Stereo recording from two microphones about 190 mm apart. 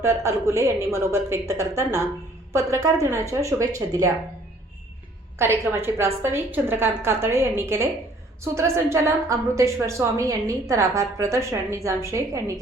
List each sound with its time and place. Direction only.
0.0 s a woman's voice: 15° right (ahead or behind)
5.4 s a woman's voice: 10° right (ahead or behind)